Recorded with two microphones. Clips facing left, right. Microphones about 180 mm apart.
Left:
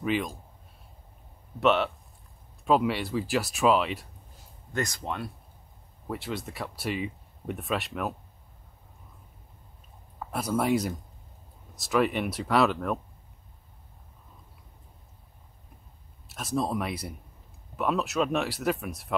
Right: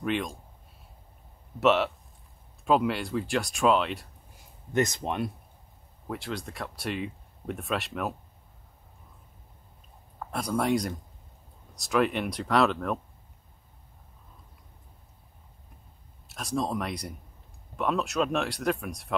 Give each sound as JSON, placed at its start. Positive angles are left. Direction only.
{"t": 0.0, "sound": "speech", "side_deg": 0}
{"t": 1.6, "sound": "speech", "side_deg": 0}
{"t": 4.7, "sound": "speech", "side_deg": -20}
{"t": 6.0, "sound": "speech", "side_deg": 0}
{"t": 10.1, "sound": "speech", "side_deg": 5}
{"t": 16.3, "sound": "speech", "side_deg": 0}